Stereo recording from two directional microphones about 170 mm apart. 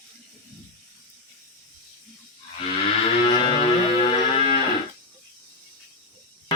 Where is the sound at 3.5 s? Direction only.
35° left (ahead or behind).